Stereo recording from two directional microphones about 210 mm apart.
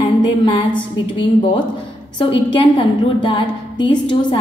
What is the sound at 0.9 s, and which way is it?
A woman's voice, 20° left (ahead or behind).